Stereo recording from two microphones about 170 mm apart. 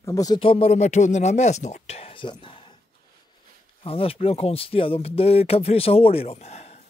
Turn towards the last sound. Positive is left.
turn(degrees=40)  # may be behind; listen again after turning